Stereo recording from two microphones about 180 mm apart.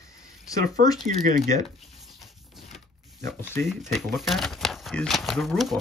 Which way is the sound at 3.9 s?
Centre (ahead or behind).